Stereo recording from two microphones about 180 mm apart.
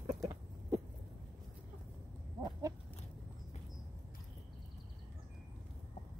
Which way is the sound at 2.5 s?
20° right (ahead or behind).